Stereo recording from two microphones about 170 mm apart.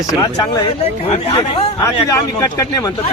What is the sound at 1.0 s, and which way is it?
Speech, 35° left (ahead or behind).